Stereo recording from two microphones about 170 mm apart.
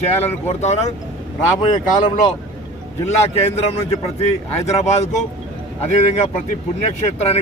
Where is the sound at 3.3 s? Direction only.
35° left (ahead or behind).